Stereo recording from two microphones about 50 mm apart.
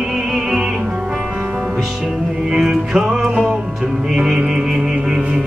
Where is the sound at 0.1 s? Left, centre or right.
Centre.